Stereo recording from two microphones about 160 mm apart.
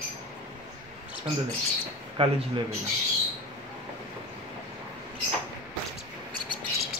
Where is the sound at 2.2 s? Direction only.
35° right (ahead or behind).